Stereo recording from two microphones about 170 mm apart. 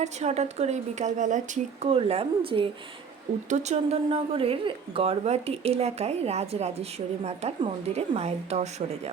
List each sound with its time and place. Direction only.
0.0 s a woman's voice: 40° right (ahead or behind)
1.8 s a woman's voice: 35° right (ahead or behind)